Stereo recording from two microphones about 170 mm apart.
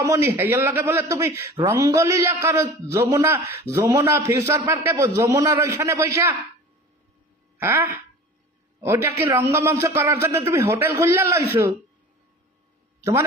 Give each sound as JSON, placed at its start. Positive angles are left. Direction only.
{"t": 0.0, "sound": "a man's voice", "side_deg": -15}
{"t": 7.5, "sound": "a man's voice", "side_deg": -10}